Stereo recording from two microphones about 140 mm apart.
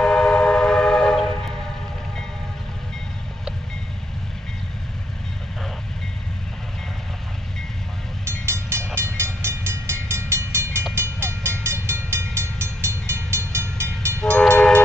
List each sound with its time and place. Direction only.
0.0 s train: 5° left (ahead or behind)
8.3 s train: 20° right (ahead or behind)
14.2 s train: 10° left (ahead or behind)